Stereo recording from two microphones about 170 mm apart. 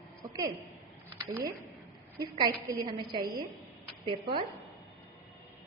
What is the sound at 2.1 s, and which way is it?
A woman's voice, 20° right (ahead or behind).